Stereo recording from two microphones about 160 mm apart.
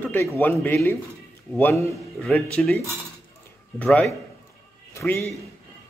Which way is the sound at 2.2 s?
5° left (ahead or behind).